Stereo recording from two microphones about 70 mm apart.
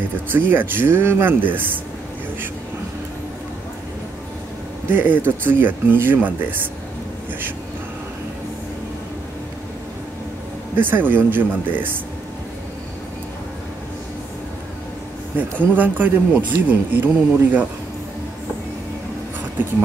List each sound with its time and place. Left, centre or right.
0.3 s speech: right
4.8 s speech: right
10.9 s speech: right
15.6 s speech: right